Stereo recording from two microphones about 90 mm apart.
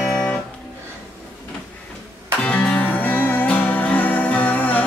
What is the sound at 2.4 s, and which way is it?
Music, 15° left (ahead or behind).